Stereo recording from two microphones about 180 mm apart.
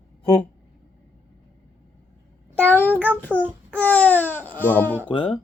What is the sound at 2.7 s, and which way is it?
Speech, 10° left (ahead or behind).